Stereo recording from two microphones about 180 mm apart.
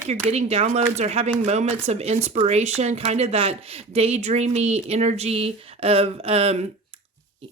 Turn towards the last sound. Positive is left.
turn(degrees=-35)  # may be behind; listen again after turning